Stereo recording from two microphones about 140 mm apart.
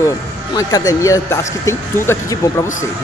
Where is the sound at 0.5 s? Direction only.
25° left (ahead or behind).